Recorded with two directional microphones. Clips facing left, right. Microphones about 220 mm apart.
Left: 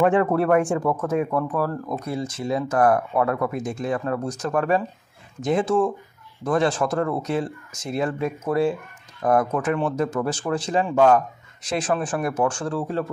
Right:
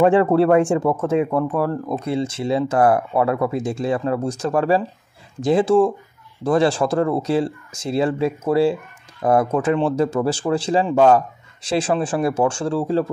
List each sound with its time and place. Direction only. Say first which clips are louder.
0.0 s speech: right 4 dB; 30° right (ahead or behind)